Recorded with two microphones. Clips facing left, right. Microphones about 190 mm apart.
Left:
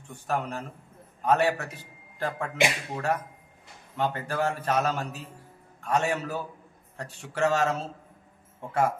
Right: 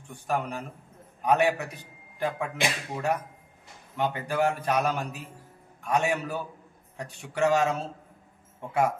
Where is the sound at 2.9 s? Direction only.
15° right (ahead or behind).